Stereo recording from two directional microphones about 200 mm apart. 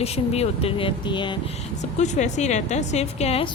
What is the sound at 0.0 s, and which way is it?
Speech, 30° left (ahead or behind).